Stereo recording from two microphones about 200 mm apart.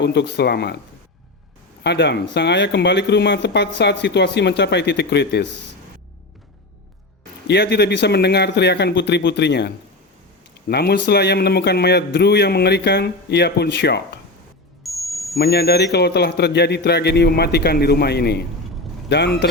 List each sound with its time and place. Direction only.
0.0 s speech: 60° left (ahead or behind)
1.8 s speech: 60° left (ahead or behind)
7.4 s speech: 55° left (ahead or behind)
14.8 s music: centre (ahead or behind)
15.4 s speech: 50° left (ahead or behind)